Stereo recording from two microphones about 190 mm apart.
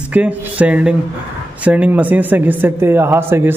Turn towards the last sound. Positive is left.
turn(degrees=-10)  # may be behind; listen again after turning